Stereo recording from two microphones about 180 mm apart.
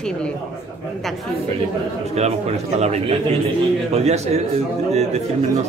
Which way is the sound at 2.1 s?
35° right (ahead or behind).